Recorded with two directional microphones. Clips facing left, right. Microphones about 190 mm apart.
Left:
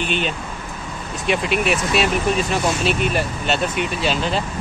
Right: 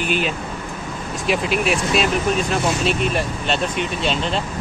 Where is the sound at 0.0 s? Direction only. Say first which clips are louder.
Right 1 dB; 5° right (ahead or behind).